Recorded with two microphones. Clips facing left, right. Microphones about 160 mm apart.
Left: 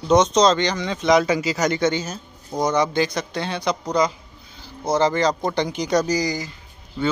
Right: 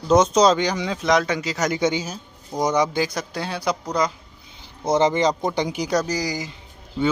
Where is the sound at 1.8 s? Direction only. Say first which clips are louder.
Left 1 dB; 10° right (ahead or behind).